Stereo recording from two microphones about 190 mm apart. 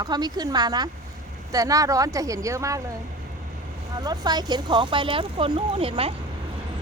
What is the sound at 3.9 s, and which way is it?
Speech, 20° right (ahead or behind).